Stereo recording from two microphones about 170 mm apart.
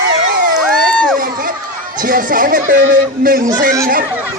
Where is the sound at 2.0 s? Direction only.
55° right (ahead or behind).